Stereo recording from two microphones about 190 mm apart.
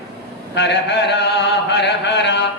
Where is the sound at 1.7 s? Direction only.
65° left (ahead or behind).